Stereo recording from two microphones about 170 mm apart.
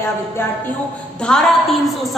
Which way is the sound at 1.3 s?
Centre (ahead or behind).